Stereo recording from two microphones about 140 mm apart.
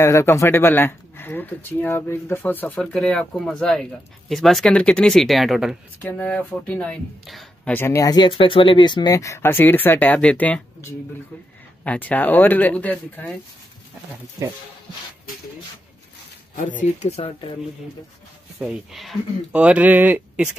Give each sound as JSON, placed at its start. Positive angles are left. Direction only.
{"t": 0.0, "sound": "speech", "side_deg": 20}
{"t": 5.9, "sound": "speech", "side_deg": 10}
{"t": 7.7, "sound": "speech", "side_deg": 20}
{"t": 17.0, "sound": "speech", "side_deg": 45}
{"t": 18.6, "sound": "speech", "side_deg": -5}